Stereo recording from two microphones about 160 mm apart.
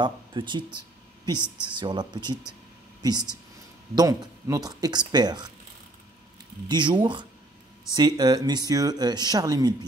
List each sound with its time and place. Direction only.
0.0 s speech: 30° right (ahead or behind)
1.7 s speech: 30° right (ahead or behind)
6.7 s speech: 30° right (ahead or behind)